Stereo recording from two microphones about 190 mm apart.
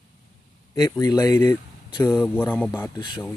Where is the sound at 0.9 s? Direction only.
15° left (ahead or behind).